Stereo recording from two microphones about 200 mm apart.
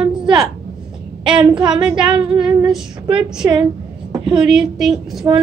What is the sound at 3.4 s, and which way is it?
A woman's voice, 10° right (ahead or behind).